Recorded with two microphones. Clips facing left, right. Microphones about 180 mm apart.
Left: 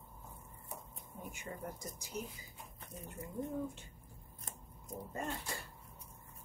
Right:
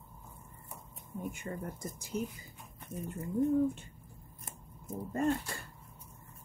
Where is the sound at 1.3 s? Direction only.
55° right (ahead or behind).